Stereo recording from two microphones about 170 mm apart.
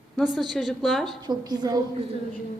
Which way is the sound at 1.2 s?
25° right (ahead or behind).